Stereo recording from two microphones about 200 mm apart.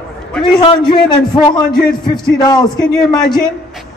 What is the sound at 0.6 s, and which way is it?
Speech, 25° left (ahead or behind).